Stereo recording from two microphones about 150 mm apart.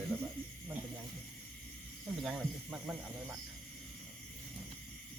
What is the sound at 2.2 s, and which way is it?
Speech, 5° right (ahead or behind).